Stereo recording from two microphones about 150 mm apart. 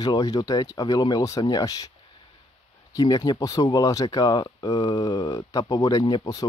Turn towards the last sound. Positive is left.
turn(degrees=25)  # may be behind; listen again after turning